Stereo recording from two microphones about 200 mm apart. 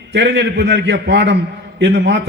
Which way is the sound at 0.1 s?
60° right (ahead or behind).